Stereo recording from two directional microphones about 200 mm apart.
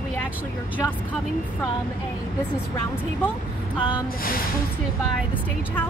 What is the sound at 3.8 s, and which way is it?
Speech, 25° left (ahead or behind).